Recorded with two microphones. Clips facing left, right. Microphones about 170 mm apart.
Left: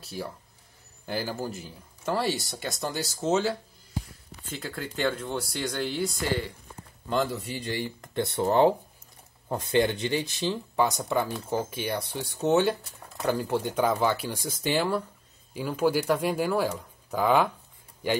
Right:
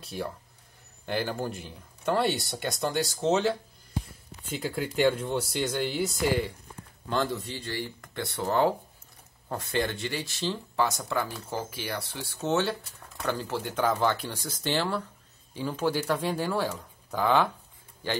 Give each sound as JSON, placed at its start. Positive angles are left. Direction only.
{"t": 0.0, "sound": "speech", "side_deg": 0}
{"t": 4.6, "sound": "speech", "side_deg": -10}
{"t": 7.1, "sound": "speech", "side_deg": 5}